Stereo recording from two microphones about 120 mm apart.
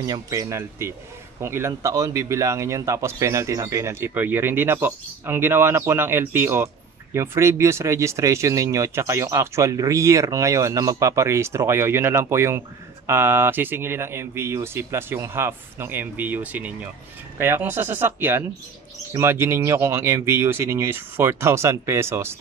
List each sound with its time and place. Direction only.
0.0 s speech: 25° right (ahead or behind)